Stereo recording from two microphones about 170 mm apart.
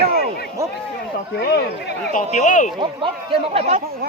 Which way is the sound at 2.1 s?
50° left (ahead or behind).